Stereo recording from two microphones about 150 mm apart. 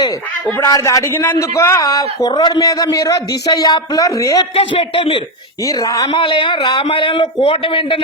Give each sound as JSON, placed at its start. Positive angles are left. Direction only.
{"t": 0.6, "sound": "a man's voice", "side_deg": 20}
{"t": 4.5, "sound": "speech", "side_deg": 40}
{"t": 5.6, "sound": "speech", "side_deg": 20}